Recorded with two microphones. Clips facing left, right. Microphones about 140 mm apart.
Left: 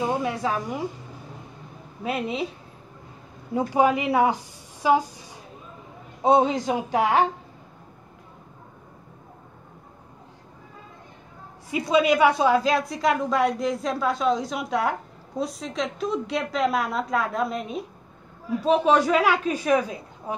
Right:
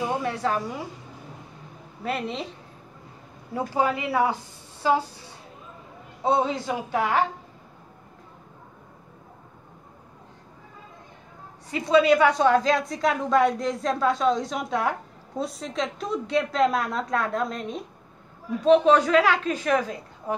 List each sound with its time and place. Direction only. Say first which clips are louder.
0.2 s a woman's voice: even; 15° left (ahead or behind)
2.0 s a woman's voice: left 2 dB; 10° left (ahead or behind)
3.5 s a woman's voice: left 4 dB; 15° left (ahead or behind)
11.7 s a woman's voice: right 2 dB; 10° left (ahead or behind)